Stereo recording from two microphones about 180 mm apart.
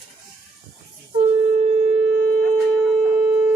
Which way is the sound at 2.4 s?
Centre (ahead or behind).